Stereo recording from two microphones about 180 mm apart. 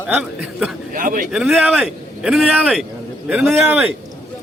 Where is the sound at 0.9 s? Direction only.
50° right (ahead or behind).